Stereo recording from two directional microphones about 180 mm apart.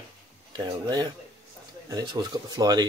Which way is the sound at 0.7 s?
25° right (ahead or behind).